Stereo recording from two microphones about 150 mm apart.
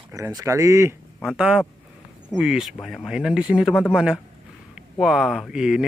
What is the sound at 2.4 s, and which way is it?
A man's voice, 5° right (ahead or behind).